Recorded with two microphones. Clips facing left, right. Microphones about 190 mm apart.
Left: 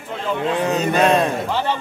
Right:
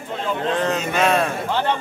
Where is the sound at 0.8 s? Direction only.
35° left (ahead or behind).